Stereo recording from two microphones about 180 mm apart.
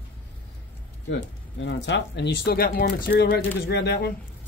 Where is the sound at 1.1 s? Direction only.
80° left.